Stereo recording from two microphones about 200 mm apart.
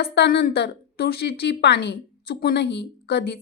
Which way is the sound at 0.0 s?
50° left (ahead or behind).